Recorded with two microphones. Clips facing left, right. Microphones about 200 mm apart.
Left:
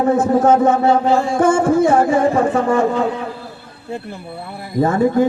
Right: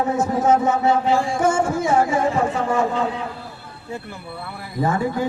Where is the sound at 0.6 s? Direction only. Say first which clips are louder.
Left 5 dB; 55° left (ahead or behind).